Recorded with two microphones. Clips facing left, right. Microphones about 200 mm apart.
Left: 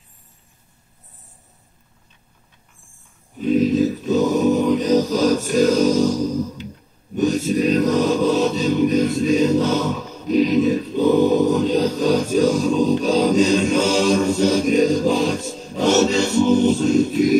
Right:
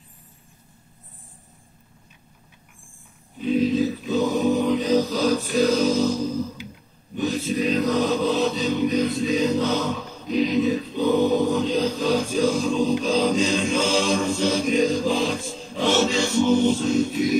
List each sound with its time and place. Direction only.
3.3 s a capella: 45° left (ahead or behind)
7.2 s chant: 45° left (ahead or behind)